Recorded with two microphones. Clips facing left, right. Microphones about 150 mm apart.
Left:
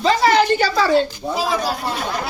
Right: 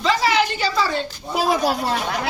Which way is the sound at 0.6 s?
70° left (ahead or behind).